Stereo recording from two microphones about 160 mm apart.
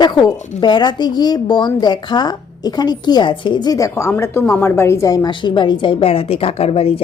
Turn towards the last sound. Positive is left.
turn(degrees=35)  # may be behind; listen again after turning